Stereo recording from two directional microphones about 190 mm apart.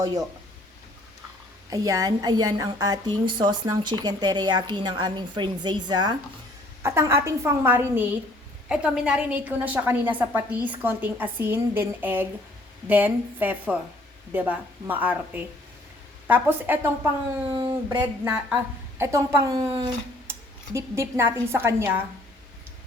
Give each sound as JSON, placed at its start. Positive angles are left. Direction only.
{"t": 0.0, "sound": "speech", "side_deg": -20}
{"t": 1.7, "sound": "a woman's voice", "side_deg": -20}
{"t": 17.4, "sound": "speech", "side_deg": -25}
{"t": 18.3, "sound": "a woman's voice", "side_deg": -5}